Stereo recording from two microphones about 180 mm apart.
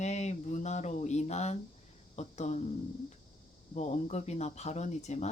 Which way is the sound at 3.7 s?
40° left (ahead or behind).